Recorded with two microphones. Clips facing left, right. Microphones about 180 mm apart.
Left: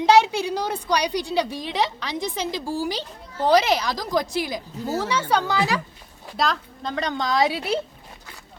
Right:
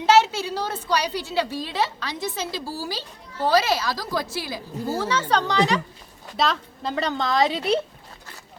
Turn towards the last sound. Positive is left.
turn(degrees=5)  # may be behind; listen again after turning